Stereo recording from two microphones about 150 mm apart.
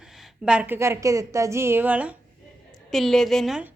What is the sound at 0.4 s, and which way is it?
Speech, 5° right (ahead or behind).